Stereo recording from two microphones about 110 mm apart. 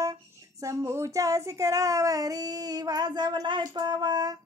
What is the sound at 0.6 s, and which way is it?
Child singing, 25° right (ahead or behind).